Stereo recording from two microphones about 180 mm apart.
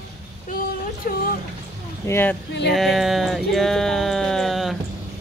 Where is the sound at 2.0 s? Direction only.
10° left (ahead or behind).